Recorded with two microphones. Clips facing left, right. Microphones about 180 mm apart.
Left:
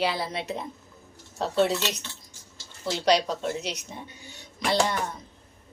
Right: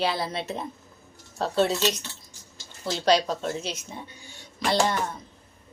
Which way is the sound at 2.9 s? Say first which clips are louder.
Right 1 dB; 20° left (ahead or behind).